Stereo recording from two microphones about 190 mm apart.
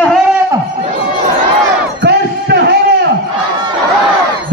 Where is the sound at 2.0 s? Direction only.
60° right (ahead or behind).